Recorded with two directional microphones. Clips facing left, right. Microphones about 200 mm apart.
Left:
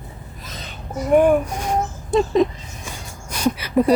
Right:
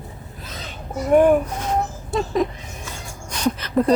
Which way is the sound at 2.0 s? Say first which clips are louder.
Left 6 dB; 20° left (ahead or behind).